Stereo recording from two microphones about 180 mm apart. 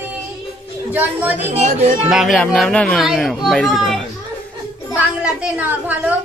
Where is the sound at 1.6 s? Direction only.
45° right (ahead or behind).